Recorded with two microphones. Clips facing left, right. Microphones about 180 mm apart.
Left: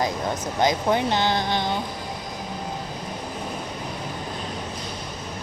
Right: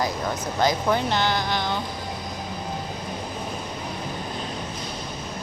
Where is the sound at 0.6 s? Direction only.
20° left (ahead or behind).